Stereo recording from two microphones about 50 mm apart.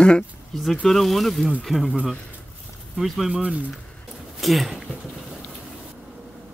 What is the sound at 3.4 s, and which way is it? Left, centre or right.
Speech, right.